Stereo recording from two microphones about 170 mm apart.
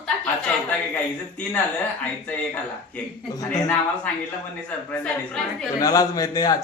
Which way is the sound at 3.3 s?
20° left (ahead or behind).